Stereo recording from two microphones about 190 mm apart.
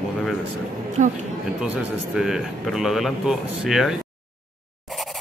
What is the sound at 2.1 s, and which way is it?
Speech, centre (ahead or behind).